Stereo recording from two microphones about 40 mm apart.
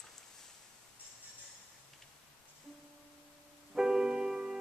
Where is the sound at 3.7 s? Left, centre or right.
Centre.